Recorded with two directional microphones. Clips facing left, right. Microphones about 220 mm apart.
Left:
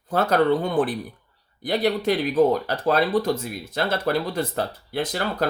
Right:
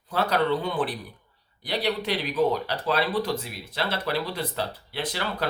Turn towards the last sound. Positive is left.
turn(degrees=45)  # may be behind; listen again after turning